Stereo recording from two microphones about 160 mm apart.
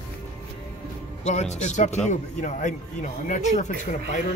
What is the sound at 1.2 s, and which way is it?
Speech, 45° left (ahead or behind).